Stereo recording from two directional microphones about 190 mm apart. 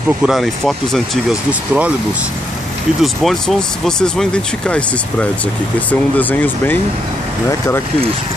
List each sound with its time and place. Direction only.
0.2 s speech: centre (ahead or behind)
3.0 s speech: centre (ahead or behind)